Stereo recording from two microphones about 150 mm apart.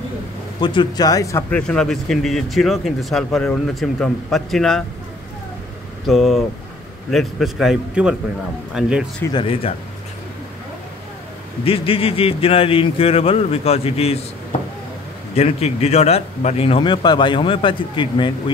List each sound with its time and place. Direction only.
0.6 s speech: 30° left (ahead or behind)
1.5 s speech: 5° left (ahead or behind)
6.0 s speech: centre (ahead or behind)
9.3 s a man's voice: 35° left (ahead or behind)
11.6 s a man's voice: 40° left (ahead or behind)
15.3 s a man's voice: 45° left (ahead or behind)